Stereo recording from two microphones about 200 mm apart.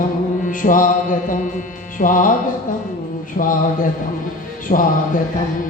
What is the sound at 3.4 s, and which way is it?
Mantra, 45° left (ahead or behind).